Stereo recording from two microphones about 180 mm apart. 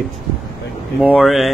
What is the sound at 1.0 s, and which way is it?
Speech, 5° right (ahead or behind).